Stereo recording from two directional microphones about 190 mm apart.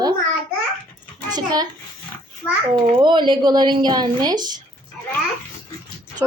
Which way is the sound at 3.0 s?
25° right (ahead or behind).